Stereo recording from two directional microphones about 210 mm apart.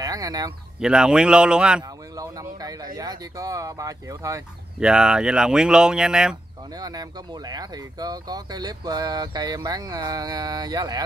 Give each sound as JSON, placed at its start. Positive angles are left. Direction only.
{"t": 0.0, "sound": "a sound", "side_deg": -15}
{"t": 0.7, "sound": "speech", "side_deg": -5}
{"t": 2.1, "sound": "a sound", "side_deg": -15}
{"t": 3.0, "sound": "speech", "side_deg": -15}
{"t": 4.7, "sound": "speech", "side_deg": -5}
{"t": 6.8, "sound": "speech", "side_deg": -20}